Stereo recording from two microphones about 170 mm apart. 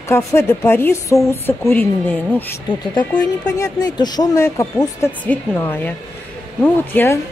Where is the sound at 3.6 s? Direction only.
20° left (ahead or behind).